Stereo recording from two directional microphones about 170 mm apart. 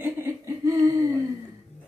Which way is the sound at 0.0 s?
15° right (ahead or behind).